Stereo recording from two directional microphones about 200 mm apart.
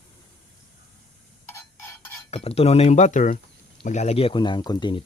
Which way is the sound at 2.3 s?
30° left (ahead or behind).